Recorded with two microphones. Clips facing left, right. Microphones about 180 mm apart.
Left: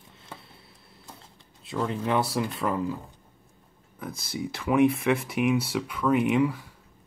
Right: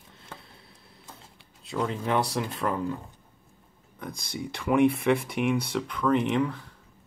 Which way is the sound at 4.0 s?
5° left (ahead or behind).